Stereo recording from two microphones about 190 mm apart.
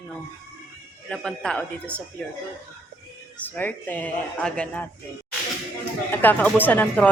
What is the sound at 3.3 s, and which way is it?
A man's voice, 10° left (ahead or behind).